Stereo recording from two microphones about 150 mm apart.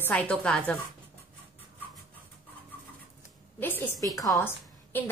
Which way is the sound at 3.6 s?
15° left (ahead or behind).